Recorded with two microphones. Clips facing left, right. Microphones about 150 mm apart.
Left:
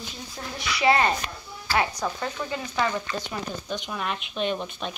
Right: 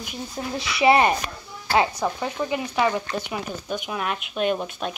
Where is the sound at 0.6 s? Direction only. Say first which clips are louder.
Right 4 dB; 25° right (ahead or behind).